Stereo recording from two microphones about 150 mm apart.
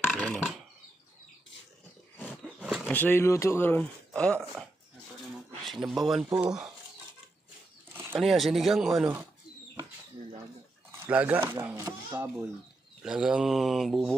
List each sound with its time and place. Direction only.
0.0 s a sound: 5° left (ahead or behind)
2.4 s roaring cats: 5° right (ahead or behind)
2.8 s speech: 10° left (ahead or behind)
5.7 s mantra: centre (ahead or behind)
8.2 s mantra: centre (ahead or behind)
9.0 s speech: 20° right (ahead or behind)
11.1 s speech: 10° right (ahead or behind)
13.0 s mantra: 5° right (ahead or behind)